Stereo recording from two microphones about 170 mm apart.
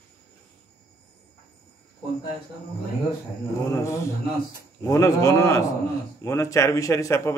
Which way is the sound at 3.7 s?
15° left (ahead or behind).